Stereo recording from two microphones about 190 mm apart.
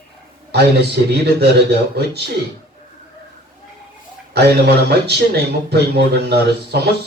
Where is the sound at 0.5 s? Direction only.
60° right (ahead or behind).